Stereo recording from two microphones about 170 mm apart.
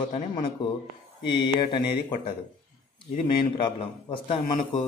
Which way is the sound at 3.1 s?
30° left (ahead or behind).